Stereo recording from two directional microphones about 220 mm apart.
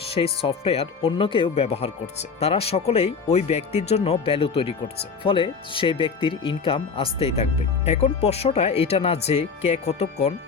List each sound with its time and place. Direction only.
0.1 s speech: 25° left (ahead or behind)